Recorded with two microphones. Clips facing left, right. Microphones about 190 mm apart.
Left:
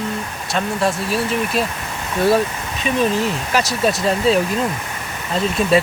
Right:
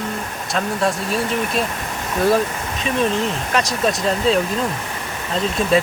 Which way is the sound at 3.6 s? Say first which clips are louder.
Left 1 dB; 5° left (ahead or behind).